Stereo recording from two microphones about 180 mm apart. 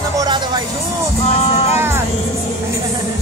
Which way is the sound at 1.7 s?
15° right (ahead or behind).